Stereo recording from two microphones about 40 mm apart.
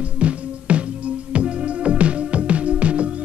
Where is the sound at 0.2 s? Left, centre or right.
Right.